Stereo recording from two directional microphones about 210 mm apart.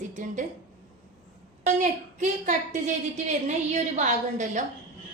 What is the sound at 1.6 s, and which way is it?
A woman's voice, 35° right (ahead or behind).